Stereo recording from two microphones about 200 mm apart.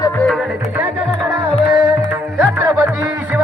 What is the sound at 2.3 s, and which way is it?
Music, 5° right (ahead or behind).